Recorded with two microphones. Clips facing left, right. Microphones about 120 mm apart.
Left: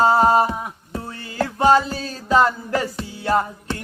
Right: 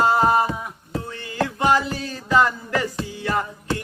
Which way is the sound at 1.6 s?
35° left (ahead or behind).